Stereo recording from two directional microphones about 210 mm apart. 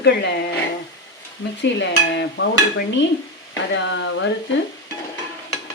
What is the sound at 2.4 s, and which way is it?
Speech, 55° left (ahead or behind).